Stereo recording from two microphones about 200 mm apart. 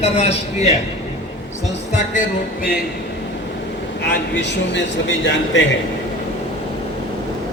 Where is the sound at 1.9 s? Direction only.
40° left (ahead or behind).